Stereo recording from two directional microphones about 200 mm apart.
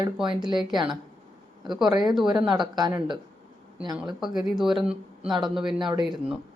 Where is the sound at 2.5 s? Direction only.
20° right (ahead or behind).